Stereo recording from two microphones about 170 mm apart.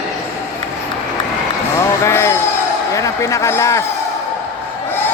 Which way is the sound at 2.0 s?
15° left (ahead or behind).